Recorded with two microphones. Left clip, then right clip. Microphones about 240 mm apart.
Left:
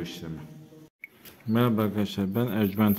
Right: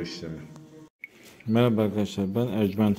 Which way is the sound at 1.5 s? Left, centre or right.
Centre.